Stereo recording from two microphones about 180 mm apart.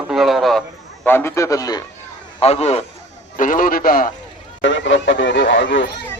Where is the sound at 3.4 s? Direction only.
50° left (ahead or behind).